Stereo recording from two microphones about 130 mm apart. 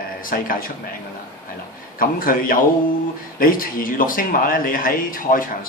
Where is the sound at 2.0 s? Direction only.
90° left.